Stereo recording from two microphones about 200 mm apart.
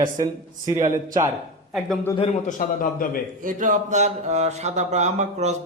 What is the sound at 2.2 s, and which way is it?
A man's voice, 40° left (ahead or behind).